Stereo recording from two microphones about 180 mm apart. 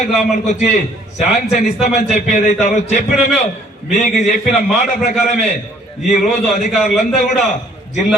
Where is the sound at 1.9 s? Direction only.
40° left (ahead or behind).